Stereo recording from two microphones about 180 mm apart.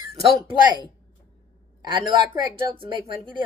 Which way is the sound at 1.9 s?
25° right (ahead or behind).